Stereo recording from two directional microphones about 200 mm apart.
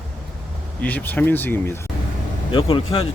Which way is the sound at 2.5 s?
25° left (ahead or behind).